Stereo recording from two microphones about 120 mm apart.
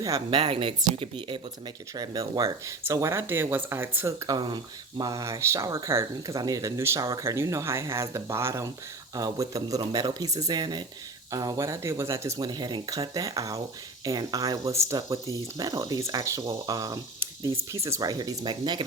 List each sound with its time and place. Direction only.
0.3 s speech: 45° right (ahead or behind); by 4.4 s 25° right (ahead or behind)
4.4 s speech: 40° right (ahead or behind)
12.5 s speech: 35° right (ahead or behind)